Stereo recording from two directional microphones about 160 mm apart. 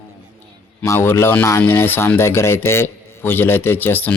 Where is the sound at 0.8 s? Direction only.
15° left (ahead or behind).